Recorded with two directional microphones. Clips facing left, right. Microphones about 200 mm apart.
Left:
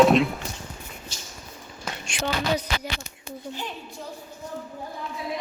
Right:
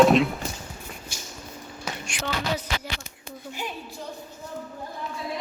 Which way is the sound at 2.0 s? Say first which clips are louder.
Left 3 dB; 25° left (ahead or behind).